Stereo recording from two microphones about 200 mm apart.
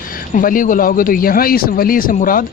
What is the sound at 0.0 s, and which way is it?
Speech, 45° left (ahead or behind).